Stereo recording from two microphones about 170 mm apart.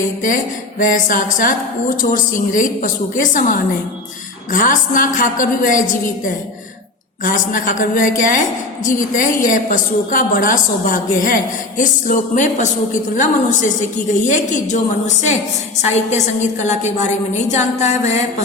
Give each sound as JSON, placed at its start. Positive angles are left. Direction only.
{"t": 0.8, "sound": "a woman's voice", "side_deg": 50}
{"t": 7.3, "sound": "a woman's voice", "side_deg": 50}
{"t": 17.8, "sound": "a sound", "side_deg": 40}